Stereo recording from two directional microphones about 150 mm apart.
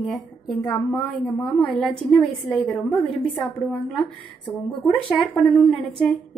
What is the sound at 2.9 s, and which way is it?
Speech, 35° left (ahead or behind).